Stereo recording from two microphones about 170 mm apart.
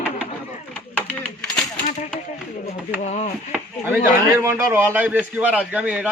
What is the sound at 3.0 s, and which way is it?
Speech, 40° left (ahead or behind).